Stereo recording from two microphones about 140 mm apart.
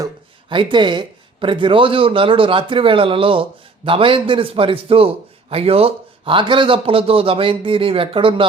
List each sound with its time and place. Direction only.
0.5 s a man's voice: 35° right (ahead or behind)